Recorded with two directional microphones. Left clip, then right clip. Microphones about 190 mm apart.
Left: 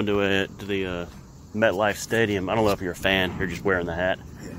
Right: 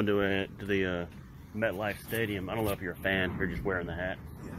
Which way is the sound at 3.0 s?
25° left (ahead or behind).